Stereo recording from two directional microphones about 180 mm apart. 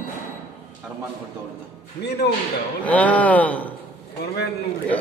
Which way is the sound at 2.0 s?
65° left (ahead or behind).